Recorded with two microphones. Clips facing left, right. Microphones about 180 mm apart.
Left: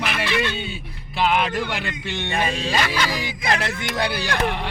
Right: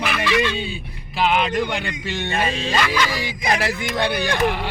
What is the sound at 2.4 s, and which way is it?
Speech, 10° left (ahead or behind).